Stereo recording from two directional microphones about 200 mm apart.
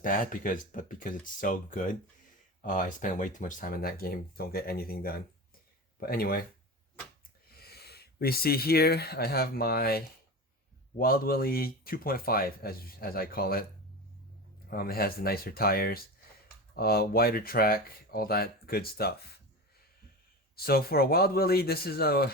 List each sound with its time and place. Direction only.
0.0 s a man's voice: 45° left (ahead or behind)
7.5 s a man's voice: 50° left (ahead or behind)
14.7 s a man's voice: 50° left (ahead or behind)
20.6 s a man's voice: 50° left (ahead or behind)